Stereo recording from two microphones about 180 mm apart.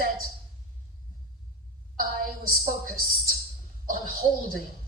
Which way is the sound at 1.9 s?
50° right (ahead or behind).